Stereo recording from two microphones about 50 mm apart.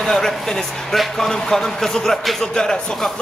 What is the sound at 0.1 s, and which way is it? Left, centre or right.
Speech, centre.